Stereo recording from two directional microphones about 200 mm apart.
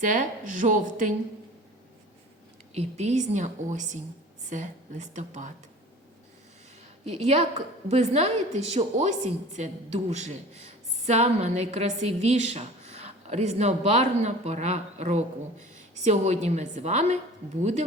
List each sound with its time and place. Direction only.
0.0 s a woman's voice: 40° right (ahead or behind)
2.7 s a woman's voice: 35° right (ahead or behind)
7.0 s a woman's voice: 30° right (ahead or behind)